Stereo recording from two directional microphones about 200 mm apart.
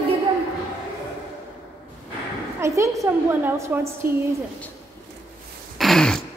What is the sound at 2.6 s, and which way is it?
A woman's voice, 15° right (ahead or behind).